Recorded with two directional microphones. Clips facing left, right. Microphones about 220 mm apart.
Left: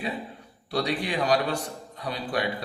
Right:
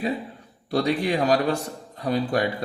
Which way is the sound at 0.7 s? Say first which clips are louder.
Right 5 dB; 45° right (ahead or behind).